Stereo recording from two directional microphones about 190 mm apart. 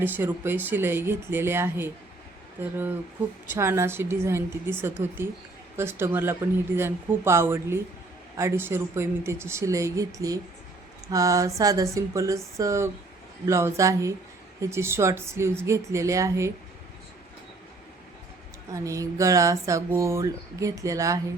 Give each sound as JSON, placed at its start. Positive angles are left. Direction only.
{"t": 0.0, "sound": "speech", "side_deg": -10}
{"t": 18.7, "sound": "speech", "side_deg": -15}